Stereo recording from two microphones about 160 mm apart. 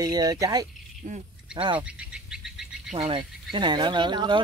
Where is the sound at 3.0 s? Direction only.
35° right (ahead or behind).